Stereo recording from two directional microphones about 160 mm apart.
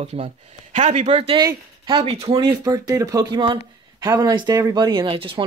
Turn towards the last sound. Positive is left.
turn(degrees=-35)  # may be behind; listen again after turning